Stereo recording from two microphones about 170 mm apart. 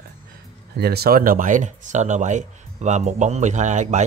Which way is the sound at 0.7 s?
70° right (ahead or behind).